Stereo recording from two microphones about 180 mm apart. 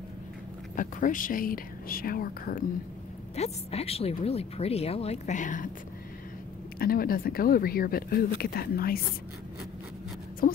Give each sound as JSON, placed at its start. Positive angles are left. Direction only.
{"t": 0.7, "sound": "speech", "side_deg": 45}
{"t": 3.3, "sound": "a woman's voice", "side_deg": 35}
{"t": 6.8, "sound": "speech", "side_deg": 55}
{"t": 10.4, "sound": "speech", "side_deg": 50}